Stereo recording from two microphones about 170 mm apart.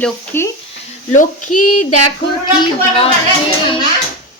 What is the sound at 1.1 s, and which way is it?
Speech, 45° left (ahead or behind).